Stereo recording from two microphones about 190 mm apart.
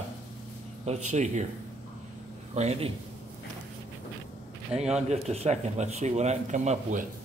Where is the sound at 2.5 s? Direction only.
35° right (ahead or behind).